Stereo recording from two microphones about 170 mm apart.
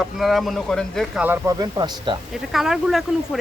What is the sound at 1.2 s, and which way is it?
Speech, 10° right (ahead or behind).